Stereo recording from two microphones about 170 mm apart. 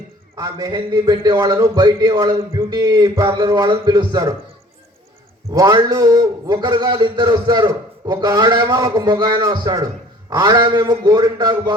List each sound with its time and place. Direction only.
0.3 s a man's voice: 20° right (ahead or behind)
5.5 s a man's voice: 20° right (ahead or behind)